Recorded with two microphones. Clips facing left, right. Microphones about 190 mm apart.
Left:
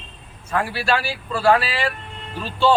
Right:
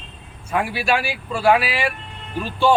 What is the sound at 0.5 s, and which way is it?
Speech, 15° right (ahead or behind).